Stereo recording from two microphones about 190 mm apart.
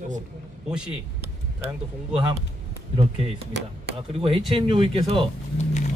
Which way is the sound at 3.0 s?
30° right (ahead or behind).